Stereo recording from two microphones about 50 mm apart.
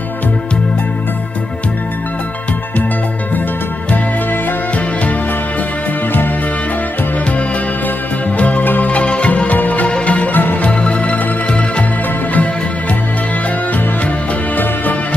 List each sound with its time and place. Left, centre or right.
8.4 s music: left
10.3 s music: left
10.7 s music: left
14.5 s music: left